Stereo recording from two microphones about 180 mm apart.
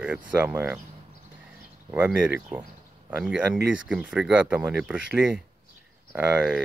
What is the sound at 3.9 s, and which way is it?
Speech, 5° right (ahead or behind).